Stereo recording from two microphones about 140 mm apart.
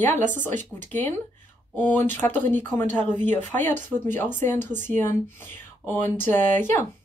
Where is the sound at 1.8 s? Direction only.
10° left (ahead or behind).